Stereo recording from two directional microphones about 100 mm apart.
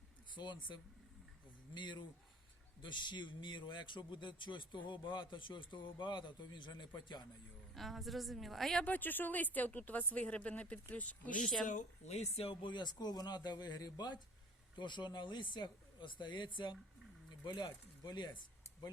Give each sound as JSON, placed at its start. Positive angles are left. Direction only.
{"t": 0.3, "sound": "speech", "side_deg": 50}
{"t": 7.7, "sound": "a woman's voice", "side_deg": 0}
{"t": 8.8, "sound": "speech", "side_deg": 15}
{"t": 12.0, "sound": "speech", "side_deg": 90}
{"t": 12.7, "sound": "speech", "side_deg": 45}